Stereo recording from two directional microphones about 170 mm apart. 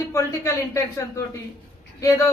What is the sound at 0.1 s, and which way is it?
Speech, 15° left (ahead or behind).